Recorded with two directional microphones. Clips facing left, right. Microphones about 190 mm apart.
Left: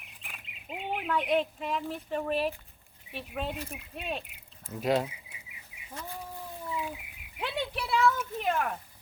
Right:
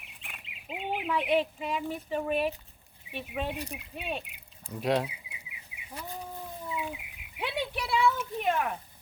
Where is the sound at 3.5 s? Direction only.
15° right (ahead or behind).